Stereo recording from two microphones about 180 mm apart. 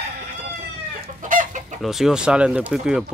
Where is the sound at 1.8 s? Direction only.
Centre (ahead or behind).